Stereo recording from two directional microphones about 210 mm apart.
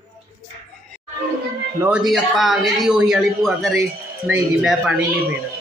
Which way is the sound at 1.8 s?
5° right (ahead or behind).